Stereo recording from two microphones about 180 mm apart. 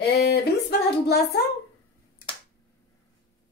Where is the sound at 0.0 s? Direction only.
65° left (ahead or behind).